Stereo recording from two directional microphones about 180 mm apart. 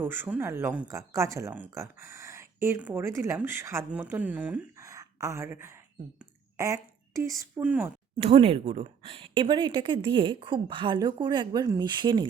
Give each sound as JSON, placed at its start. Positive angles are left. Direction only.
{"t": 0.0, "sound": "a woman's voice", "side_deg": -10}
{"t": 8.2, "sound": "speech", "side_deg": -30}